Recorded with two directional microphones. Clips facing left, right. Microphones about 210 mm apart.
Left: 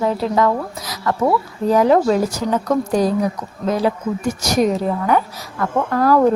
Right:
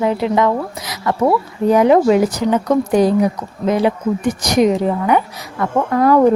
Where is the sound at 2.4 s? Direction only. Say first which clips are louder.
Right 3 dB; 20° right (ahead or behind).